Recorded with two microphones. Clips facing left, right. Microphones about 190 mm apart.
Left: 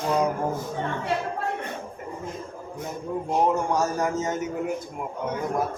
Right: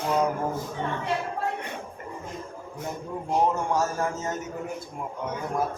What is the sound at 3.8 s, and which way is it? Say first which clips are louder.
Speech: left 3 dB; 20° left (ahead or behind).